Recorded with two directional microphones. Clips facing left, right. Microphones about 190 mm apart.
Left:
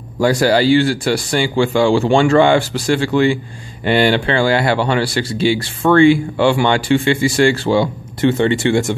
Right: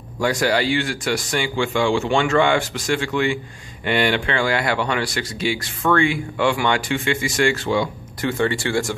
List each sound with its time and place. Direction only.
0.2 s speech: 35° left (ahead or behind)